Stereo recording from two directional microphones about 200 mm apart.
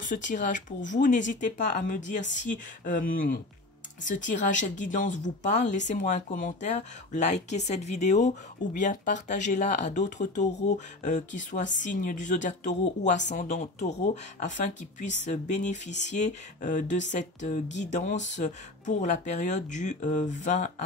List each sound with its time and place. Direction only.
0.0 s speech: 40° left (ahead or behind)